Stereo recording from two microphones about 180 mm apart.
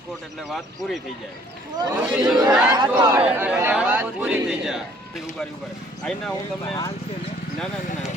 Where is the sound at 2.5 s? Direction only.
5° right (ahead or behind).